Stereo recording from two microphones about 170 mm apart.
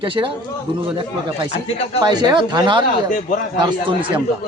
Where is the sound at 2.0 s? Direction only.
25° right (ahead or behind).